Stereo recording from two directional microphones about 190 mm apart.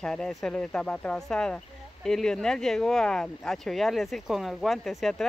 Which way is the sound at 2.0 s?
Centre (ahead or behind).